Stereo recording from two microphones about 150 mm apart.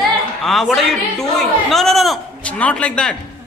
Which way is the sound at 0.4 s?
Centre (ahead or behind).